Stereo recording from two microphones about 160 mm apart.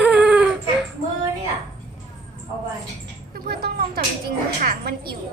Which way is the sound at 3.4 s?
75° right (ahead or behind).